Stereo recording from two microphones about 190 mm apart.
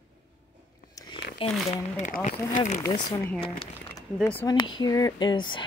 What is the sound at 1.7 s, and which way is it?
Speech, 40° left (ahead or behind).